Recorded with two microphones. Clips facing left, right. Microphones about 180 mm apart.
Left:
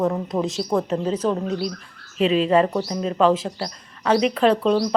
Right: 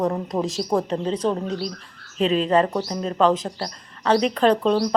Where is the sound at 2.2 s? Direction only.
40° right (ahead or behind).